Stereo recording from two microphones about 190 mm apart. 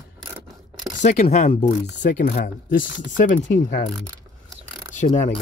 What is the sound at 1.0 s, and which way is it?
Speech, 35° left (ahead or behind).